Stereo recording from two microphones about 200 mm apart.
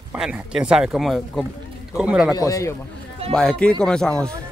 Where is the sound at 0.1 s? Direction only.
5° right (ahead or behind).